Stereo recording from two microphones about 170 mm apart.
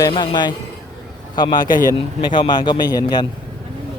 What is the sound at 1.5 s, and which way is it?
Speech, 55° left (ahead or behind).